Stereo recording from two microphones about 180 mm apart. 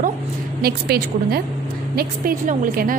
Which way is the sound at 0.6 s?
60° right (ahead or behind).